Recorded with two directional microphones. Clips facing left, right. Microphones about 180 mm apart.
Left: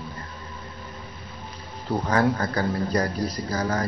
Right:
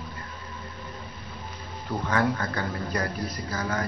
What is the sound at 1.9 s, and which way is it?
Speech, 35° left (ahead or behind).